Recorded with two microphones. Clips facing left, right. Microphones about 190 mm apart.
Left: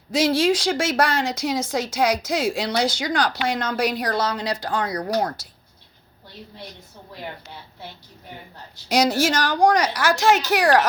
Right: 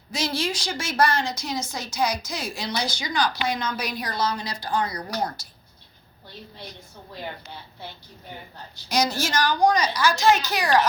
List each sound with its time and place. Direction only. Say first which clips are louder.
0.1 s a woman's voice: left 9 dB; 90° left
8.9 s a woman's voice: left 5 dB; 90° left